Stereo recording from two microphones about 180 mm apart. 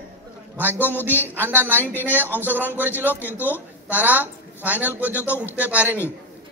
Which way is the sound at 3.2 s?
10° left (ahead or behind).